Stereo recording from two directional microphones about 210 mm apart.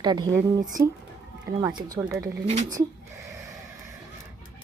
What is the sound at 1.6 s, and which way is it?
Speech, 15° right (ahead or behind).